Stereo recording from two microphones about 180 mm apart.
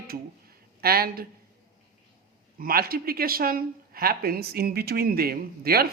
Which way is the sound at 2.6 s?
55° right (ahead or behind).